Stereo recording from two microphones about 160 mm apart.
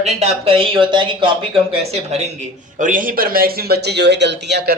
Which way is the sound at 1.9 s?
40° right (ahead or behind).